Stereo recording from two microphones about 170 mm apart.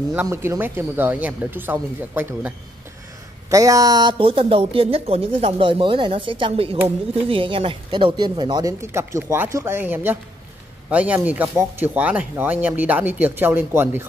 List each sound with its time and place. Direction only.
0.1 s speech: 10° right (ahead or behind)